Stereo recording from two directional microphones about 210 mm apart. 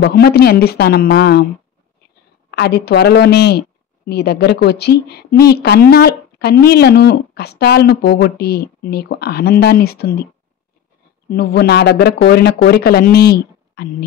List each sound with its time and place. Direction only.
0.0 s a woman's voice: 50° left (ahead or behind)
2.5 s a woman's voice: 50° left (ahead or behind)
11.2 s a woman's voice: 50° left (ahead or behind)